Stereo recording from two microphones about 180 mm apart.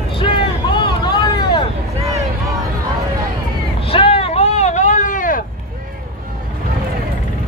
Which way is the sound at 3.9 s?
30° left (ahead or behind).